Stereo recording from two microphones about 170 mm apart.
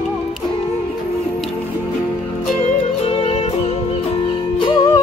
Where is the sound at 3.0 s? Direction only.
35° left (ahead or behind).